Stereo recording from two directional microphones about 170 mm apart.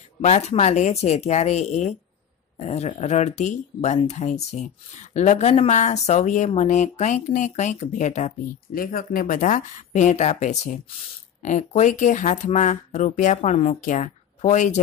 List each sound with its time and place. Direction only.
0.2 s speech: 40° left (ahead or behind)
8.7 s speech: 55° left (ahead or behind)